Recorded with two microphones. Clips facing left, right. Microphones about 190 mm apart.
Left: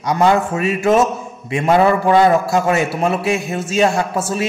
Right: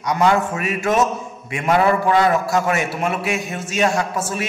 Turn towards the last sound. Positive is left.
turn(degrees=30)  # may be behind; listen again after turning